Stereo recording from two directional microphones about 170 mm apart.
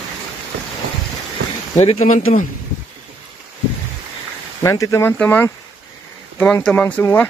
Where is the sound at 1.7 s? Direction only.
40° left (ahead or behind).